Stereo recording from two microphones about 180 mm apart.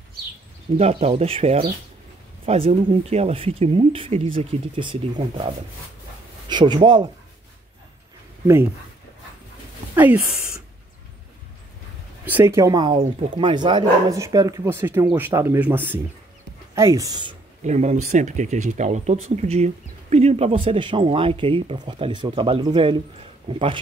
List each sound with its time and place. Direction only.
0.7 s speech: 35° right (ahead or behind)
6.5 s speech: 25° right (ahead or behind)
12.3 s speech: 10° right (ahead or behind)
17.6 s speech: 40° right (ahead or behind)